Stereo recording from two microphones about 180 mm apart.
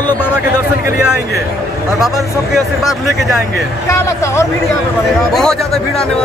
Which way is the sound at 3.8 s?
15° left (ahead or behind).